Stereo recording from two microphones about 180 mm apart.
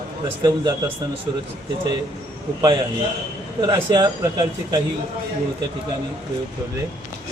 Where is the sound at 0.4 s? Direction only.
25° right (ahead or behind).